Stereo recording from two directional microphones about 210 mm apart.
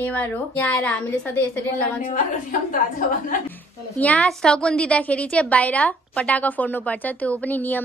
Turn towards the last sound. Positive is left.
turn(degrees=10)  # may be behind; listen again after turning